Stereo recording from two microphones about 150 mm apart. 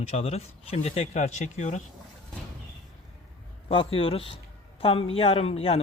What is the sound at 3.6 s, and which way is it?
Speech, 35° left (ahead or behind).